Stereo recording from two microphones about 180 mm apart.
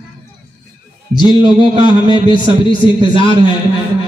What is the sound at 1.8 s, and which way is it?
A man's voice, 25° left (ahead or behind).